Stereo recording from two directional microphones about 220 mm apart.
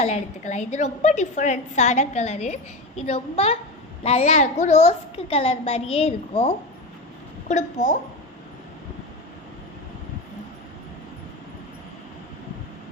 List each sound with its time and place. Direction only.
0.0 s a woman's voice: 30° left (ahead or behind)